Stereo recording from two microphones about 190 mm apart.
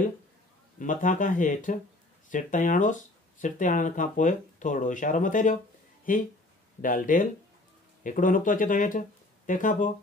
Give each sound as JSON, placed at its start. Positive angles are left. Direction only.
{"t": 0.7, "sound": "speech", "side_deg": 40}